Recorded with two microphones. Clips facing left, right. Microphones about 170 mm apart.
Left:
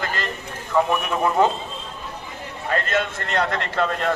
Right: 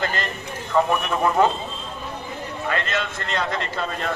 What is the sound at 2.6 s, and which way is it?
A man's voice, 45° left (ahead or behind).